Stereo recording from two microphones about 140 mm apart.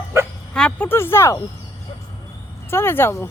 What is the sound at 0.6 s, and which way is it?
Speech, 10° left (ahead or behind).